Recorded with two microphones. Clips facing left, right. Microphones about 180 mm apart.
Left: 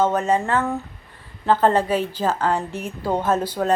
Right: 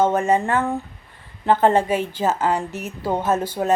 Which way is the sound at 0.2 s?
15° right (ahead or behind).